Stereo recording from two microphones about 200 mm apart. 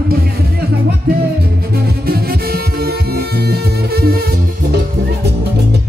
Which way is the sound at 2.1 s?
50° right (ahead or behind).